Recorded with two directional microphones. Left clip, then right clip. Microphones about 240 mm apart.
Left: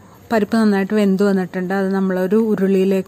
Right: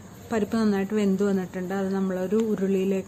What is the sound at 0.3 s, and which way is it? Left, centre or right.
A woman's voice, left.